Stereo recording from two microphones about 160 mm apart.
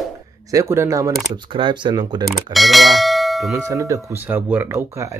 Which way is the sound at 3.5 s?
20° right (ahead or behind).